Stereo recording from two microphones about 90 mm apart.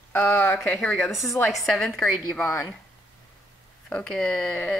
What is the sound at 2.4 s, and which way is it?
Speech, 35° left (ahead or behind).